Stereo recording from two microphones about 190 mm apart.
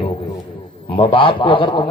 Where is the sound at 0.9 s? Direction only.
30° left (ahead or behind).